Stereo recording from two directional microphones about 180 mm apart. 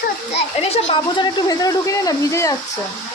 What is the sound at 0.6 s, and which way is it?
Speech, 35° left (ahead or behind).